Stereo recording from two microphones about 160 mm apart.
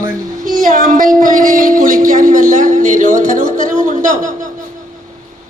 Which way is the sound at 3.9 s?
55° right (ahead or behind).